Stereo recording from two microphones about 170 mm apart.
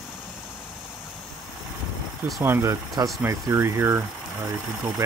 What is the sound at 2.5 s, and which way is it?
Speech, 20° right (ahead or behind).